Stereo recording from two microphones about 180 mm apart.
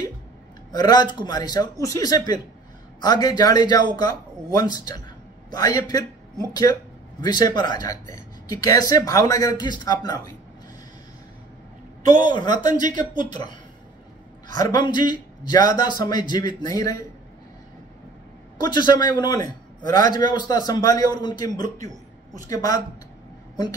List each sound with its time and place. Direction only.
0.7 s speech: 25° left (ahead or behind)
12.2 s speech: 25° left (ahead or behind)
14.7 s speech: 25° left (ahead or behind)
18.6 s speech: 25° left (ahead or behind)
21.6 s speech: 45° right (ahead or behind)
22.5 s speech: 20° left (ahead or behind)